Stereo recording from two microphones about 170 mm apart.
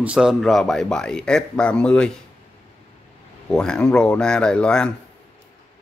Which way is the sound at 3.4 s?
5° left (ahead or behind).